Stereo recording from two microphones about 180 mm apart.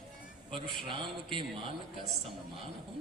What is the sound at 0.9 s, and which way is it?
Mantra, 30° right (ahead or behind).